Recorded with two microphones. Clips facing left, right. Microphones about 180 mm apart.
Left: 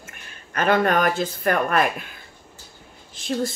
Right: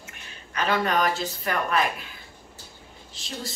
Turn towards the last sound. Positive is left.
turn(degrees=50)  # may be behind; listen again after turning